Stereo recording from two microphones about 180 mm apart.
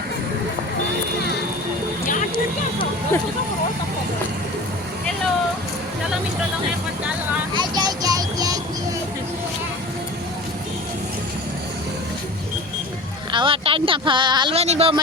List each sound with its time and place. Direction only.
7.5 s music: 25° right (ahead or behind)
13.3 s speech: 30° right (ahead or behind)